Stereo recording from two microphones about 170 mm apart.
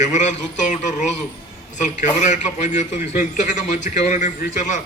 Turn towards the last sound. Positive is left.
turn(degrees=45)  # may be behind; listen again after turning